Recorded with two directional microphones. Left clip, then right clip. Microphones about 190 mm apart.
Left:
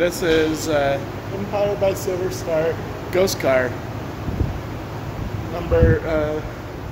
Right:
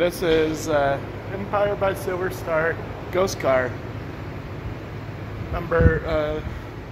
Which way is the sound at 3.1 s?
20° left (ahead or behind).